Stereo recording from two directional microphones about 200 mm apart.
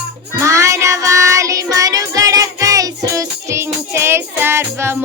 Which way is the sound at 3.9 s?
10° right (ahead or behind).